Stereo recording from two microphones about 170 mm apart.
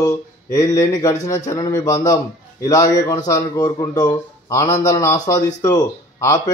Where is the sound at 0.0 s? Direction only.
20° left (ahead or behind).